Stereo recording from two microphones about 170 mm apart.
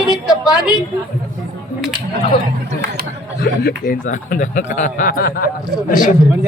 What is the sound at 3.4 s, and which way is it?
A man's voice, 60° left (ahead or behind).